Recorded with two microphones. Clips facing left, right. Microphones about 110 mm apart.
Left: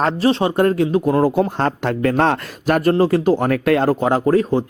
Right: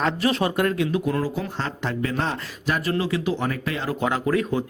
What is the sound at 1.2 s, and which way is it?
Speech, 55° left (ahead or behind).